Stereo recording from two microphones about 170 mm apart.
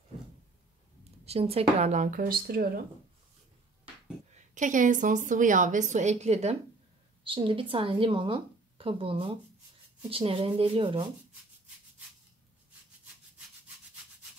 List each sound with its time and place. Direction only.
1.2 s a woman's voice: 35° right (ahead or behind); by 2.8 s 60° right (ahead or behind)
4.6 s a woman's voice: 50° right (ahead or behind); by 11.1 s 30° right (ahead or behind)